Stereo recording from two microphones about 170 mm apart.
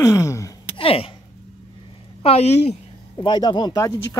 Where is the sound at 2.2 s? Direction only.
35° left (ahead or behind).